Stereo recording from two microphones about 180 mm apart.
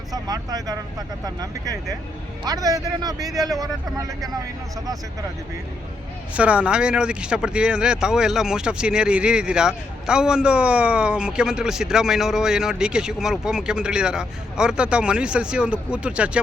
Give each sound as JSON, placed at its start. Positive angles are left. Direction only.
{"t": 0.1, "sound": "a man's voice", "side_deg": -20}
{"t": 6.3, "sound": "speech", "side_deg": -5}